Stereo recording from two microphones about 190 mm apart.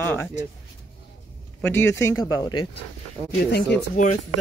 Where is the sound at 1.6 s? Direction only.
10° left (ahead or behind).